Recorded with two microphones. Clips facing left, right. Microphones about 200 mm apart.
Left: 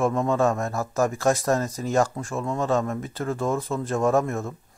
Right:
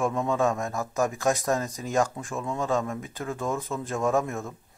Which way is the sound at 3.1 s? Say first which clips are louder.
Left 5 dB; 15° right (ahead or behind).